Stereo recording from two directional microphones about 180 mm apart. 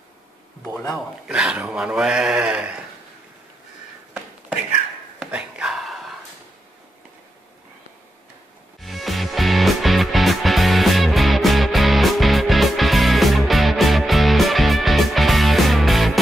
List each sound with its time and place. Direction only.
0.9 s speech: 5° right (ahead or behind)
5.2 s a sound: 5° right (ahead or behind)
8.8 s music: centre (ahead or behind)